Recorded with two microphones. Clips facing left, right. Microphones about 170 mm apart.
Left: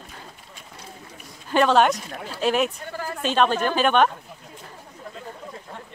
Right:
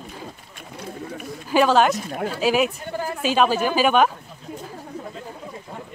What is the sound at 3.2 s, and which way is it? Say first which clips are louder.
Speech: right 1 dB; 5° right (ahead or behind).